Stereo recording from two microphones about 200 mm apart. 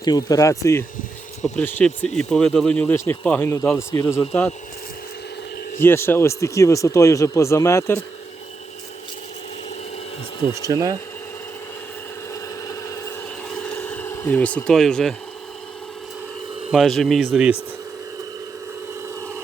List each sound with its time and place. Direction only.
0.0 s speech: 20° left (ahead or behind)
5.8 s speech: 10° left (ahead or behind)
10.4 s speech: 15° right (ahead or behind)
12.3 s wood: 15° left (ahead or behind)
13.6 s a sound: 5° left (ahead or behind)
16.7 s speech: centre (ahead or behind)